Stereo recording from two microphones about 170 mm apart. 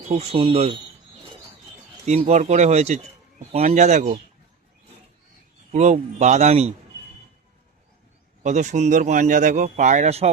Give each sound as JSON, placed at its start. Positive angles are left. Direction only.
{"t": 0.1, "sound": "a man's voice", "side_deg": -35}
{"t": 2.0, "sound": "a man's voice", "side_deg": -40}
{"t": 5.7, "sound": "a man's voice", "side_deg": -40}
{"t": 8.4, "sound": "speech", "side_deg": -45}